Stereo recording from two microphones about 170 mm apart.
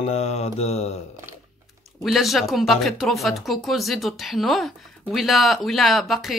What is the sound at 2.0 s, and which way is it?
Speech, centre (ahead or behind).